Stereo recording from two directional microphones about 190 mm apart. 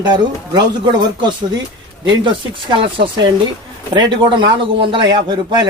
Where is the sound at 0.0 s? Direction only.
20° right (ahead or behind).